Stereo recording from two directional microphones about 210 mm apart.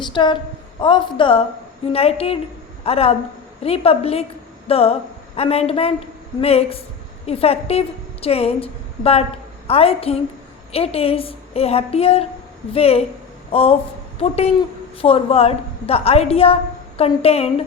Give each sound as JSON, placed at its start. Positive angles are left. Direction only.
{"t": 0.0, "sound": "a woman's voice", "side_deg": 20}